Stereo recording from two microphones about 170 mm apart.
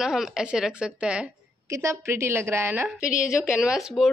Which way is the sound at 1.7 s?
15° right (ahead or behind).